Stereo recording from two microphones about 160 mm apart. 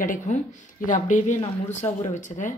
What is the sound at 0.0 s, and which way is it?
A woman's voice, 55° left (ahead or behind).